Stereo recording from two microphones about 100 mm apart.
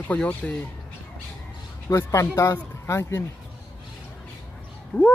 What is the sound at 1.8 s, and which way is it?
Speech, 30° left (ahead or behind).